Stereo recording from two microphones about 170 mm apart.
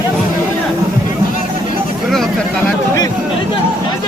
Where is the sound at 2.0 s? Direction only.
Centre (ahead or behind).